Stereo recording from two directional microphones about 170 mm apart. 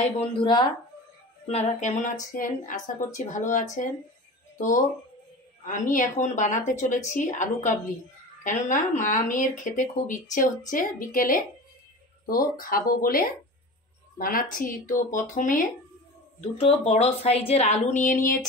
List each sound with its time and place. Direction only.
0.4 s speech: 30° left (ahead or behind)
1.5 s speech: 45° left (ahead or behind)
16.5 s speech: 35° left (ahead or behind)